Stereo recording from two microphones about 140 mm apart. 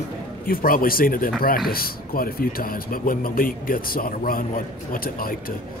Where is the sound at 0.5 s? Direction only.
90° left.